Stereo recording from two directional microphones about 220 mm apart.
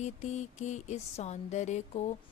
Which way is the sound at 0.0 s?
30° left (ahead or behind).